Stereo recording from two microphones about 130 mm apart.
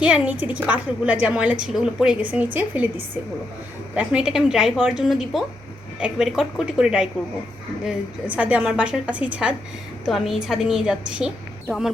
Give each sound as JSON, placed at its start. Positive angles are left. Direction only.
{"t": 0.0, "sound": "a woman's voice", "side_deg": -10}
{"t": 3.9, "sound": "a woman's voice", "side_deg": -5}
{"t": 10.1, "sound": "a woman's voice", "side_deg": 0}